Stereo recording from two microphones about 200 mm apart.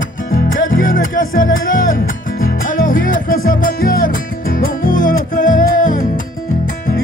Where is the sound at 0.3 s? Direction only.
45° left (ahead or behind).